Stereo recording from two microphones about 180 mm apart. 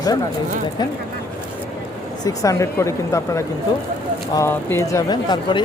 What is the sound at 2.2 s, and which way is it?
Speech, 20° left (ahead or behind).